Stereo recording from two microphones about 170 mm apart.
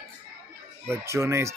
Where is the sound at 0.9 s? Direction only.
15° right (ahead or behind).